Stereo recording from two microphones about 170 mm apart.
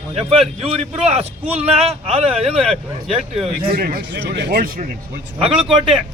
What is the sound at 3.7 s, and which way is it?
Speech, 60° right (ahead or behind).